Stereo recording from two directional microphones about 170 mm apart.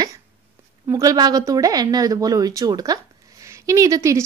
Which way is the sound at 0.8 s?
20° right (ahead or behind).